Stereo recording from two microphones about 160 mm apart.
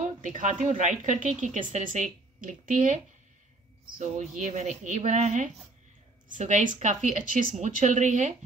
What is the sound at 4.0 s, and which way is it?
Speech, 45° right (ahead or behind).